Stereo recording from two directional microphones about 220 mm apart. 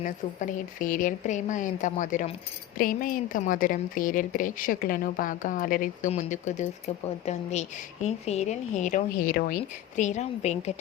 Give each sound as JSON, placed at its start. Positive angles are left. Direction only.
{"t": 0.0, "sound": "a woman's voice", "side_deg": 35}
{"t": 8.0, "sound": "a woman's voice", "side_deg": 30}
{"t": 10.0, "sound": "a woman's voice", "side_deg": 30}